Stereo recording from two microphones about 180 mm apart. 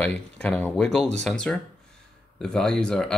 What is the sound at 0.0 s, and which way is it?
Speech, 5° left (ahead or behind).